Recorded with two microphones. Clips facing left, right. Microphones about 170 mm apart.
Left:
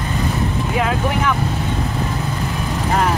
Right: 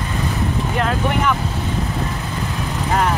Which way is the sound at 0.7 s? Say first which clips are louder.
Left 1 dB; 5° left (ahead or behind).